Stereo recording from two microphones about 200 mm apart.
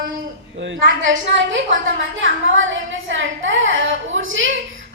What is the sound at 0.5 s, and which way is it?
A woman's voice, 70° right (ahead or behind).